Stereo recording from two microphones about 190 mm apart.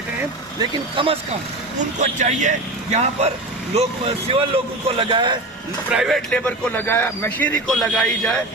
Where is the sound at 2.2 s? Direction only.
40° right (ahead or behind).